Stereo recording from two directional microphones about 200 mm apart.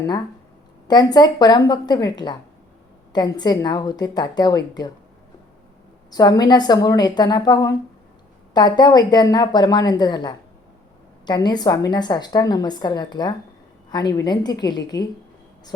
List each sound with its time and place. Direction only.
0.9 s a woman's voice: 20° left (ahead or behind)
6.1 s a woman's voice: 20° left (ahead or behind)